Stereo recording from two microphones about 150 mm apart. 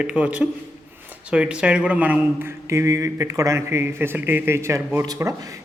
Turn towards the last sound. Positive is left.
turn(degrees=-25)  # may be behind; listen again after turning